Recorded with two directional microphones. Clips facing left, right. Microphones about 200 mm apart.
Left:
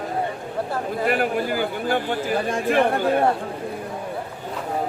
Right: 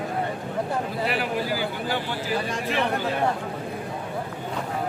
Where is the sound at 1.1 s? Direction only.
50° left (ahead or behind).